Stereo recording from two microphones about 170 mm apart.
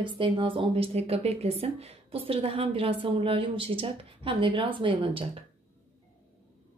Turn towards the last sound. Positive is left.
turn(degrees=-30)  # may be behind; listen again after turning